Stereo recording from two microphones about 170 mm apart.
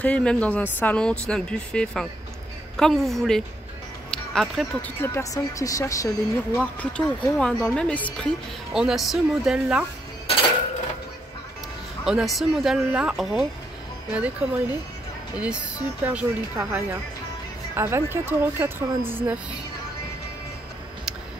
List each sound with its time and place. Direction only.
0.0 s speech: 5° left (ahead or behind)
5.0 s speech: 15° left (ahead or behind)
6.6 s speech: 5° left (ahead or behind)
12.0 s speech: 5° right (ahead or behind)
16.0 s speech: 10° right (ahead or behind)